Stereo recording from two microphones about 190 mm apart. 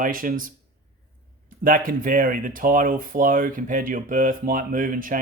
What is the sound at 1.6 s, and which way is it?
Speech, 45° right (ahead or behind).